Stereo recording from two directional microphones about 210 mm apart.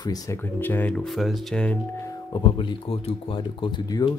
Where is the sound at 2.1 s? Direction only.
20° left (ahead or behind).